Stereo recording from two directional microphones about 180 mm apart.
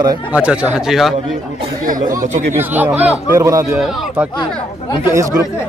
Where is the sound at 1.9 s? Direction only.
45° right (ahead or behind).